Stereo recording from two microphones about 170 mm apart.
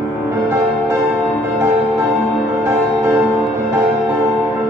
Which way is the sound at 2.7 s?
20° right (ahead or behind).